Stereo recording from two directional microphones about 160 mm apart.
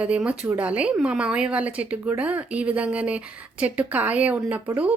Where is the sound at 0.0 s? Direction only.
10° right (ahead or behind).